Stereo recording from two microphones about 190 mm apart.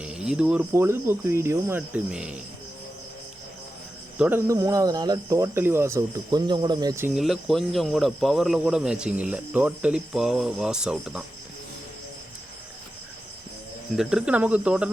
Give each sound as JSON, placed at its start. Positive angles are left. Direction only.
{"t": 0.0, "sound": "speech", "side_deg": -5}
{"t": 4.2, "sound": "speech", "side_deg": -10}
{"t": 7.1, "sound": "speech", "side_deg": 0}
{"t": 13.9, "sound": "speech", "side_deg": -5}